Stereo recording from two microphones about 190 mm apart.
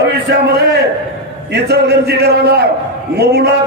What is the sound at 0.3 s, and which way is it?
A man's voice, 60° right (ahead or behind).